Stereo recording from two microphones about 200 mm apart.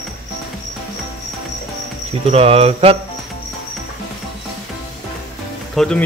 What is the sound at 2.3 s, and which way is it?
Speech, 30° right (ahead or behind).